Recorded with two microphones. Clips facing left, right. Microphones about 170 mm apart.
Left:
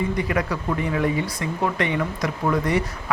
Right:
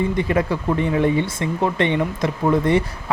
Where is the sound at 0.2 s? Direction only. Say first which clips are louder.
Right 4 dB; 25° right (ahead or behind).